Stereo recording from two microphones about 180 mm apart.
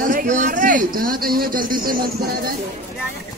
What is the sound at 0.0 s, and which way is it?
A man's voice, 50° right (ahead or behind).